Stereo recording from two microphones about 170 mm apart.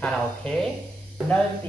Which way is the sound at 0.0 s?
5° left (ahead or behind).